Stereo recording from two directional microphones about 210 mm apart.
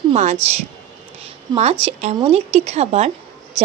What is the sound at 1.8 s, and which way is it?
Speech, 30° right (ahead or behind).